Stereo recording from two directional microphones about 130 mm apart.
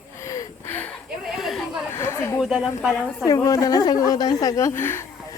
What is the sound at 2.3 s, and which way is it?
Speech, 5° right (ahead or behind).